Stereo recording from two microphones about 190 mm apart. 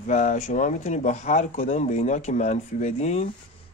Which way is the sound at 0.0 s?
40° left (ahead or behind).